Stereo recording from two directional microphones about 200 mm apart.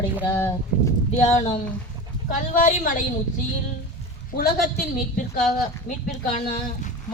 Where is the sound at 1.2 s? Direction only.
30° left (ahead or behind).